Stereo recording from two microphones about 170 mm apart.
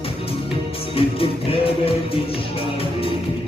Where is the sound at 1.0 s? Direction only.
35° left (ahead or behind).